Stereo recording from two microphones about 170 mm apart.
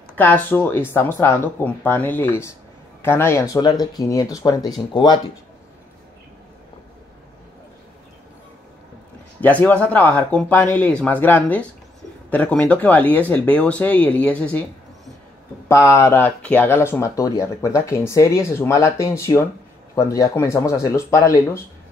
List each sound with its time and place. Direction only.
0.2 s speech: 10° left (ahead or behind)
9.4 s speech: 10° left (ahead or behind)
15.7 s speech: 15° left (ahead or behind)